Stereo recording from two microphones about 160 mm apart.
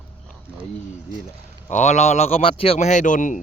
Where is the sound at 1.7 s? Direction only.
45° left (ahead or behind).